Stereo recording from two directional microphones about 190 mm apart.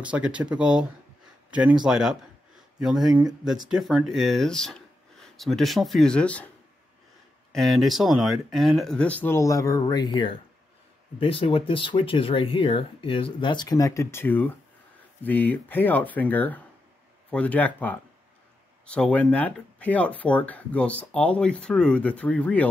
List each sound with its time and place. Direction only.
0.0 s speech: 5° right (ahead or behind)
7.5 s speech: centre (ahead or behind)